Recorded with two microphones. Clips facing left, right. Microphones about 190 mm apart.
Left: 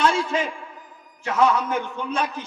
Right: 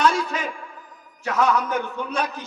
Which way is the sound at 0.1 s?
30° left (ahead or behind).